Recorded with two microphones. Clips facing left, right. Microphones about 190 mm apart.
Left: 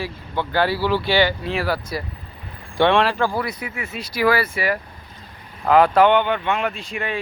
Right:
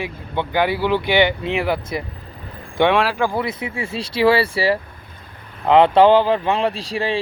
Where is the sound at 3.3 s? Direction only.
25° right (ahead or behind).